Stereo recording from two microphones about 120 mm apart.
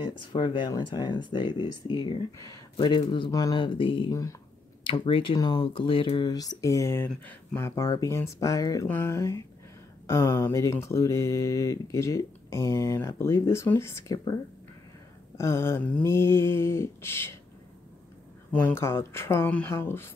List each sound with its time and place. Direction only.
0.0 s speech: 40° left (ahead or behind)
2.3 s speech: 30° left (ahead or behind)
3.5 s speech: 45° left (ahead or behind)
4.1 s speech: 30° left (ahead or behind)
4.8 s speech: 50° left (ahead or behind); by 17.4 s 20° left (ahead or behind)
18.5 s speech: 15° left (ahead or behind)